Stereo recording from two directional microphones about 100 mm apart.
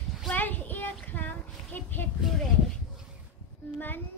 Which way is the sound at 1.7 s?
15° left (ahead or behind).